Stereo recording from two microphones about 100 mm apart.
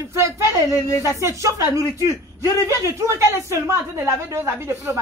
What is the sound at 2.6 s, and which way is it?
Speech, 30° right (ahead or behind).